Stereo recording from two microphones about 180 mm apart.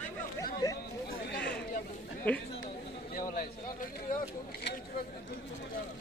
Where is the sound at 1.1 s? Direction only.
65° left (ahead or behind).